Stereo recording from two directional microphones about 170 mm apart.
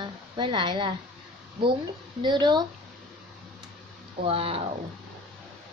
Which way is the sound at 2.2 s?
25° right (ahead or behind).